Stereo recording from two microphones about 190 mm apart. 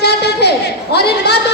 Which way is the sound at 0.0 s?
60° left (ahead or behind).